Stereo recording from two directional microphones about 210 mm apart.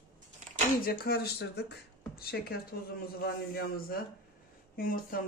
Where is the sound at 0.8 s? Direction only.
50° left (ahead or behind).